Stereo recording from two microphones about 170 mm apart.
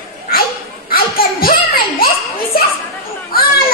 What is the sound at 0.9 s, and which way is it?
Laughter, 60° left (ahead or behind).